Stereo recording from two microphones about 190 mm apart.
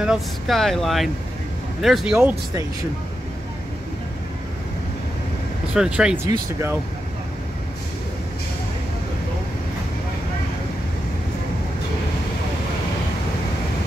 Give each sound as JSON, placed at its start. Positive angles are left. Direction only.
{"t": 0.0, "sound": "speech", "side_deg": 0}
{"t": 5.8, "sound": "speech", "side_deg": -5}